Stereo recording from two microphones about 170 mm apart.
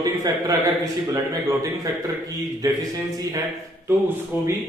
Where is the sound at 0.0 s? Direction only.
20° right (ahead or behind).